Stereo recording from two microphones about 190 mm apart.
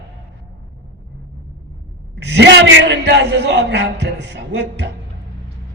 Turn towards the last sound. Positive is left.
turn(degrees=-70)  # may be behind; listen again after turning